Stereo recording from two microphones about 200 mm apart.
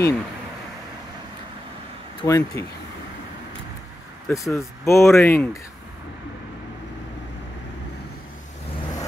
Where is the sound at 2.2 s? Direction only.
15° left (ahead or behind).